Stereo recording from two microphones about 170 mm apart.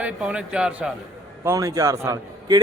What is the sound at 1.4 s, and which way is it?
A man's voice, 20° right (ahead or behind).